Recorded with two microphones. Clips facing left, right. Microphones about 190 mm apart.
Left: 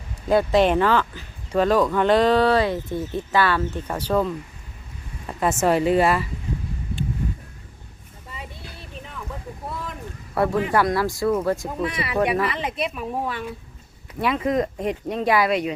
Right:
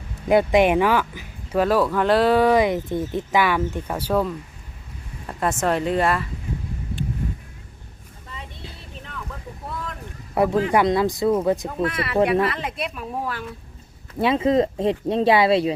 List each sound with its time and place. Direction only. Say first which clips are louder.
0.3 s speech: right 1 dB; 15° right (ahead or behind); by 6.2 s 5° left (ahead or behind)
10.3 s speech: right 2 dB; 20° right (ahead or behind)
11.5 s speech: right 2 dB; centre (ahead or behind)
14.2 s speech: right 4 dB; 25° right (ahead or behind)